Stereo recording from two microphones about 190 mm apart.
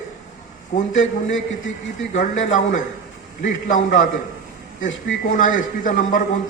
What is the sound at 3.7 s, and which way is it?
Speech, 40° left (ahead or behind).